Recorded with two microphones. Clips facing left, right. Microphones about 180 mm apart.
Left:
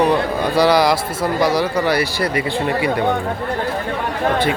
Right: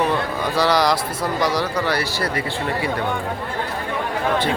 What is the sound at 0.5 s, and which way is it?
Speech, 10° left (ahead or behind).